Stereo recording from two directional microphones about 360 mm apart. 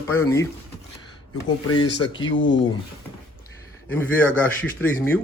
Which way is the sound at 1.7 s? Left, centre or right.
Centre.